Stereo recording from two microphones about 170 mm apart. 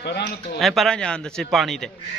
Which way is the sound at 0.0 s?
75° left (ahead or behind).